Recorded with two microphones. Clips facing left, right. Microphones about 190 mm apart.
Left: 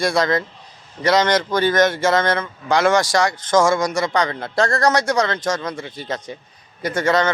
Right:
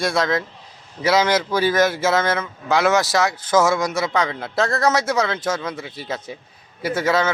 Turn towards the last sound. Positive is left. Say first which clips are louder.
# left 1 dB
turn(degrees=-5)  # may be behind; listen again after turning